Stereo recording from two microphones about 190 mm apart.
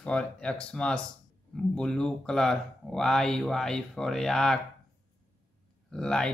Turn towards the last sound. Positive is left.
turn(degrees=5)  # may be behind; listen again after turning